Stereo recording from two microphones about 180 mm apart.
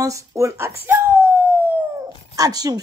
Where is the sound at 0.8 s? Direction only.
10° right (ahead or behind).